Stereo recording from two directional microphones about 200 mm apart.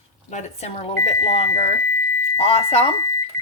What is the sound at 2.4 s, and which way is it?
Speech, 30° left (ahead or behind).